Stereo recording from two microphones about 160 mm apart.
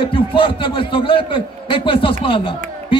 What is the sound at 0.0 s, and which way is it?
Speech, 35° left (ahead or behind).